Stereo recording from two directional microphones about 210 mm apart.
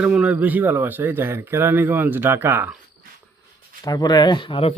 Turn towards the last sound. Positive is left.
turn(degrees=25)  # may be behind; listen again after turning